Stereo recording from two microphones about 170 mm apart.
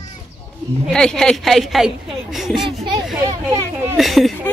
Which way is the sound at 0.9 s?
5° left (ahead or behind).